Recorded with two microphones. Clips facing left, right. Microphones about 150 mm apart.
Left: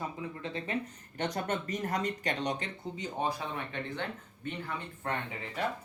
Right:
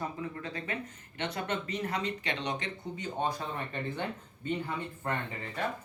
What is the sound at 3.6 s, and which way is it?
Speech, 5° right (ahead or behind).